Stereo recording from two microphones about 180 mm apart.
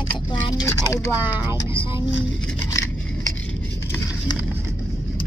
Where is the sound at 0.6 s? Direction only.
15° left (ahead or behind).